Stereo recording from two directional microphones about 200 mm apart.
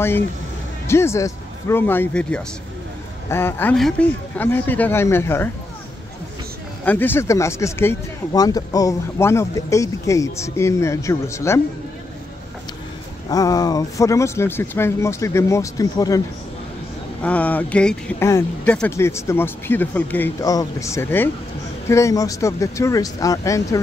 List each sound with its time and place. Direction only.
0.8 s speech: 15° left (ahead or behind)
6.8 s speech: 10° left (ahead or behind)
13.3 s speech: 20° left (ahead or behind)
17.2 s speech: 5° left (ahead or behind)